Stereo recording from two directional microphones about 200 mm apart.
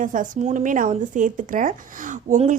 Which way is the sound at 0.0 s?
40° right (ahead or behind).